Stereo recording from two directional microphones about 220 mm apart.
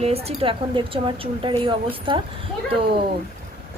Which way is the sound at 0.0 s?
30° right (ahead or behind).